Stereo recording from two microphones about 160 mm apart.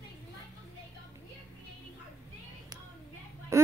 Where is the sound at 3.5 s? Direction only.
15° right (ahead or behind).